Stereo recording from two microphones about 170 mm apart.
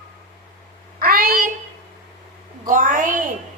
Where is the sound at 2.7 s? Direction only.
50° right (ahead or behind).